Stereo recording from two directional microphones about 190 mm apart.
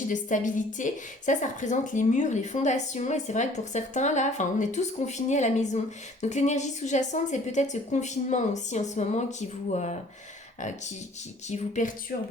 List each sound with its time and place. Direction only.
0.1 s a woman's voice: 40° left (ahead or behind)